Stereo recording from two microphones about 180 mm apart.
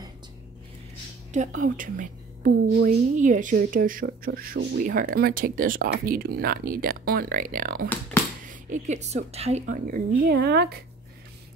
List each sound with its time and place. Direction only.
1.3 s a woman's voice: 45° right (ahead or behind)
8.1 s a sound: 10° left (ahead or behind)
8.5 s a woman's voice: 45° right (ahead or behind); by 10.8 s 65° right (ahead or behind)